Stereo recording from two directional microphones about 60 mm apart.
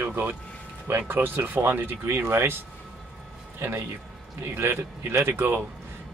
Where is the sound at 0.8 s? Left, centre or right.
Right.